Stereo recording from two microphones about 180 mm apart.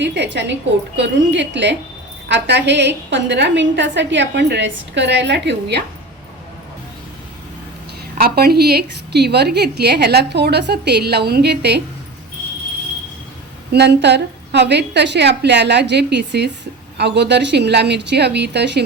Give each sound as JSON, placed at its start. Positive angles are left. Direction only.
{"t": 0.0, "sound": "a woman's voice", "side_deg": -75}
{"t": 8.2, "sound": "a woman's voice", "side_deg": -55}
{"t": 13.7, "sound": "a woman's voice", "side_deg": -70}